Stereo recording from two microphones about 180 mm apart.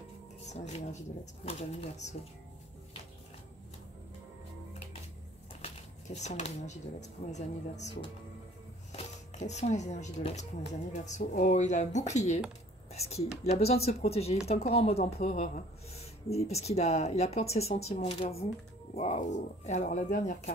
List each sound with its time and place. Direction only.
1.4 s a woman's voice: 35° left (ahead or behind)
5.6 s a woman's voice: 40° left (ahead or behind)